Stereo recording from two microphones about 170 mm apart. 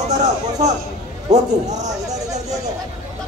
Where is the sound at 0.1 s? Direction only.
40° right (ahead or behind).